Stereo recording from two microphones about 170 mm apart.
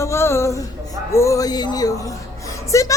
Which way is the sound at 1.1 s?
15° left (ahead or behind).